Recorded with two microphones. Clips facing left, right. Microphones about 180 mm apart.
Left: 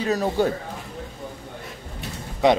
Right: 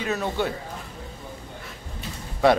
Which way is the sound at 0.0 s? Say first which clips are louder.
Left 4 dB; 35° left (ahead or behind).